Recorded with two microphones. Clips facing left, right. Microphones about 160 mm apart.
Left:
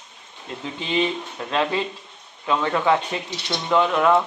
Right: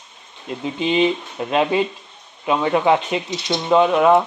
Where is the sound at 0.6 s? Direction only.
20° right (ahead or behind).